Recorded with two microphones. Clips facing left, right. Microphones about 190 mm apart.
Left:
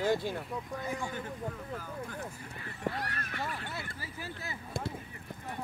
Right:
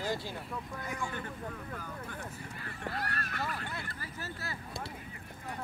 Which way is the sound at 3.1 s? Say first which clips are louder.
Right 1 dB; 40° right (ahead or behind).